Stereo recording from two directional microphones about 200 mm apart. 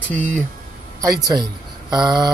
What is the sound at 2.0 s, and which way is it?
Speech, 20° right (ahead or behind).